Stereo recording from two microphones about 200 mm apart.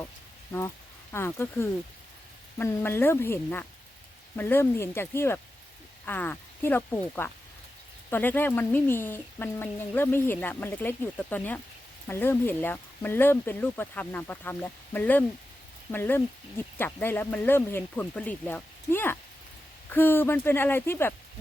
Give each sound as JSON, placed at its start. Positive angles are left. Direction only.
{"t": 1.1, "sound": "speech", "side_deg": 10}